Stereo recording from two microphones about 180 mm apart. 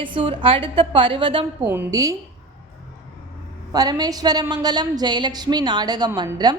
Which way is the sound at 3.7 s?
20° right (ahead or behind).